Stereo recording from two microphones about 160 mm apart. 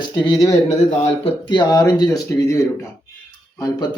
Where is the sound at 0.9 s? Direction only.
35° left (ahead or behind).